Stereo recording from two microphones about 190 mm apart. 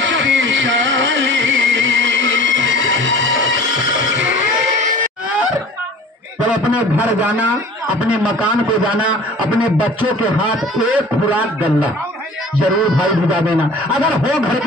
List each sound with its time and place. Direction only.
0.0 s music: 80° right
6.4 s a man's voice: 5° right (ahead or behind)
11.2 s a man's voice: 5° right (ahead or behind)
13.0 s a man's voice: 5° right (ahead or behind)